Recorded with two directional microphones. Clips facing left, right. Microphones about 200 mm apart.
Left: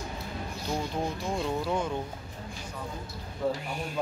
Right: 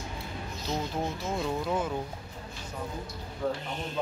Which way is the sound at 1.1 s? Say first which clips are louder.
Left 1 dB; centre (ahead or behind).